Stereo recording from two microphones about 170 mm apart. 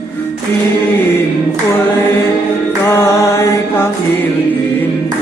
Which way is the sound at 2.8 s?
15° left (ahead or behind).